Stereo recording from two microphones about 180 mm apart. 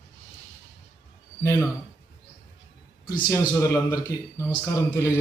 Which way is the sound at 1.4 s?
15° left (ahead or behind).